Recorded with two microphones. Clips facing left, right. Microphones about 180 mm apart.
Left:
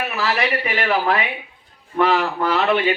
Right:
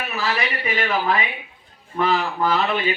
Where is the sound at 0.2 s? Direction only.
70° left (ahead or behind).